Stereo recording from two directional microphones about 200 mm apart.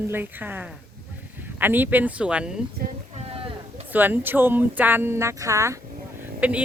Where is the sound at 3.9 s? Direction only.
10° right (ahead or behind).